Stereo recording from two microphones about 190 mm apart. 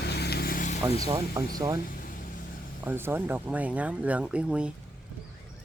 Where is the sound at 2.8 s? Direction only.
10° right (ahead or behind).